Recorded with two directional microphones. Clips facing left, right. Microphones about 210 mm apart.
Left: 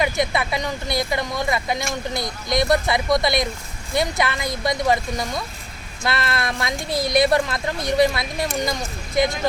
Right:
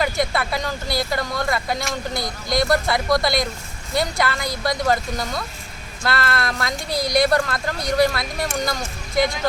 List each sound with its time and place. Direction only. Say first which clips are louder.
0.0 s speech: even; 20° left (ahead or behind)